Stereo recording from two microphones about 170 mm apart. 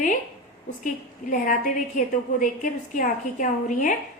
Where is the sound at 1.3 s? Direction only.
50° left (ahead or behind).